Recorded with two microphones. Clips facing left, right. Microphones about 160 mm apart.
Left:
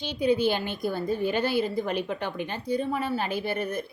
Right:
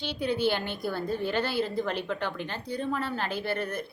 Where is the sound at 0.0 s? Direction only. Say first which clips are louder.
Left 4 dB; 15° left (ahead or behind).